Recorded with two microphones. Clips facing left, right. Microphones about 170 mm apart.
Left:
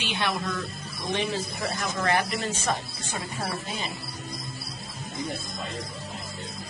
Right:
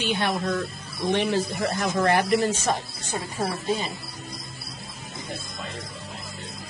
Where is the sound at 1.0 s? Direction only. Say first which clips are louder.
Right 6 dB; 60° right (ahead or behind).